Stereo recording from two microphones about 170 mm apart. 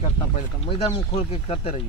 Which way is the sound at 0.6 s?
35° left (ahead or behind).